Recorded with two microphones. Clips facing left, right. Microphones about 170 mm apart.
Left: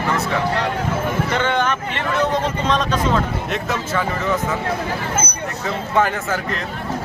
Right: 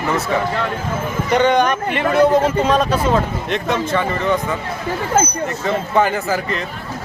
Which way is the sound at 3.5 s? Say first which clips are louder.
Right 6 dB; centre (ahead or behind).